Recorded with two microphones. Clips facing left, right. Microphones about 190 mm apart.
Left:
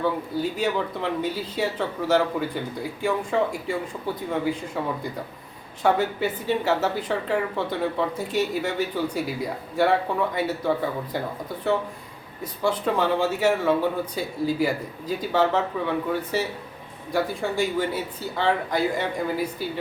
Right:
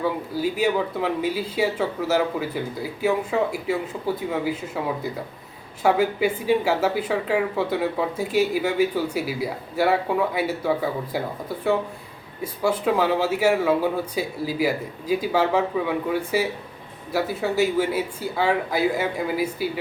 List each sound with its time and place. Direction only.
0.0 s speech: 10° right (ahead or behind)